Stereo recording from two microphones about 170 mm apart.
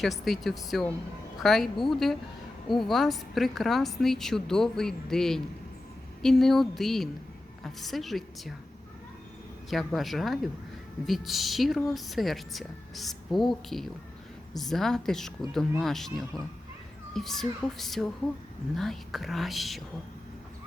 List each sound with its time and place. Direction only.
0.0 s a woman's voice: centre (ahead or behind)
9.6 s a woman's voice: centre (ahead or behind)